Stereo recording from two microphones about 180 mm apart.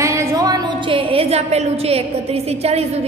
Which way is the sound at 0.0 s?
15° right (ahead or behind).